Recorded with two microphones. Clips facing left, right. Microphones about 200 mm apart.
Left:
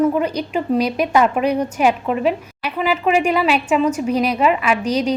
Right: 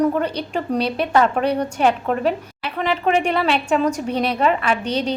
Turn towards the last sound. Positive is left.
turn(degrees=-30)  # may be behind; listen again after turning